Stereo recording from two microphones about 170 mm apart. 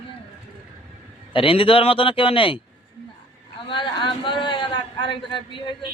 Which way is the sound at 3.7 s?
30° left (ahead or behind).